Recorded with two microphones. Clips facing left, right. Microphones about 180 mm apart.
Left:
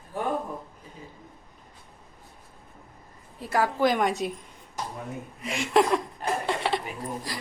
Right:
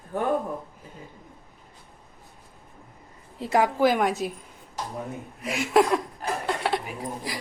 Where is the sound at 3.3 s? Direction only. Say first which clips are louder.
Right 3 dB; 25° right (ahead or behind).